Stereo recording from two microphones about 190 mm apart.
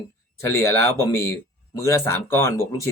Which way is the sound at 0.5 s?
15° left (ahead or behind).